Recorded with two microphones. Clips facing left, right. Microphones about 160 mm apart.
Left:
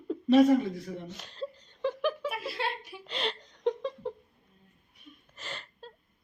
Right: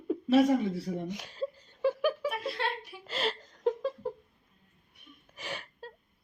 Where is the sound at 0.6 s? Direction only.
30° right (ahead or behind).